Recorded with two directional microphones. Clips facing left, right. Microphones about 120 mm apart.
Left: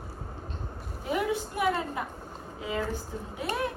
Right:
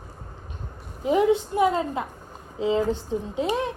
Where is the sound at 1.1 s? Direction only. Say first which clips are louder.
Right 9 dB; 25° right (ahead or behind).